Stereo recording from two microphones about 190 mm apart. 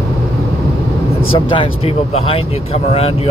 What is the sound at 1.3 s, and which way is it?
Speech, 25° left (ahead or behind).